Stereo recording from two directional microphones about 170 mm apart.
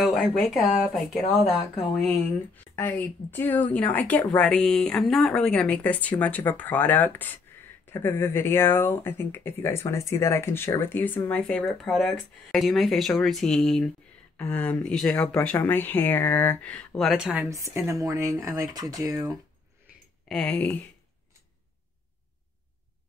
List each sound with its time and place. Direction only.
0.0 s speech: centre (ahead or behind)
17.5 s speech: 20° right (ahead or behind)
20.2 s speech: 5° left (ahead or behind)